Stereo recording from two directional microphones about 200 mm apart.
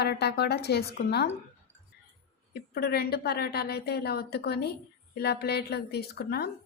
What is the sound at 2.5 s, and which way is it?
A woman's voice, 50° left (ahead or behind).